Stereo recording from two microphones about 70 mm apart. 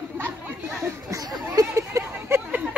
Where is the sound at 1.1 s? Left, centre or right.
Right.